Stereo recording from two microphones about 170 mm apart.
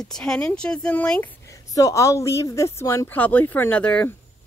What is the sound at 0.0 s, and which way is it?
Speech, 5° left (ahead or behind).